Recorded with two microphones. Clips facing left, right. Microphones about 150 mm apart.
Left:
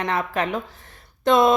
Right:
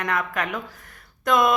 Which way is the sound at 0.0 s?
25° left (ahead or behind).